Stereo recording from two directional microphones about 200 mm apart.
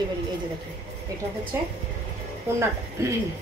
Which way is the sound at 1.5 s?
10° right (ahead or behind).